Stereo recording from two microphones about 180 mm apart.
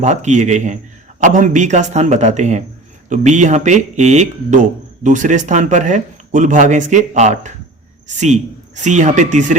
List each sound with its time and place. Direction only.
0.0 s a man's voice: 40° right (ahead or behind)